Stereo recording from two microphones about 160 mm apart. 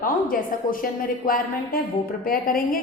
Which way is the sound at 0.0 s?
60° left (ahead or behind).